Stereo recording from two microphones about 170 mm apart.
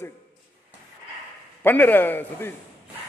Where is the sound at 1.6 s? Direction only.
10° left (ahead or behind).